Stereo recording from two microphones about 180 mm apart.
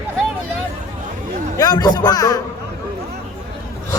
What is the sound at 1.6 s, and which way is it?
Speech, 20° left (ahead or behind).